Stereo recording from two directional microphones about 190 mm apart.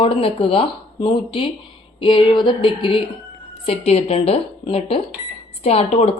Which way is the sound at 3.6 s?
30° left (ahead or behind).